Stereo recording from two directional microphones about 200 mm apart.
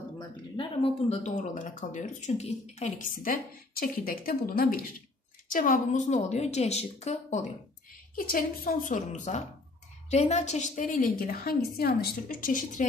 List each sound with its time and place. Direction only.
0.6 s speech: 30° left (ahead or behind)
8.2 s a woman's voice: 45° left (ahead or behind)